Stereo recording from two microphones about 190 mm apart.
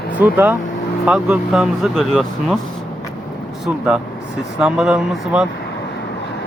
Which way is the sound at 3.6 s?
5° right (ahead or behind).